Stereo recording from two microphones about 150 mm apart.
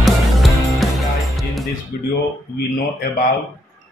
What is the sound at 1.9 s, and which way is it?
Speech, 75° left (ahead or behind).